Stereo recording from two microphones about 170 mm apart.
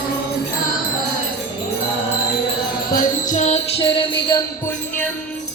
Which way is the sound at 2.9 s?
50° left (ahead or behind).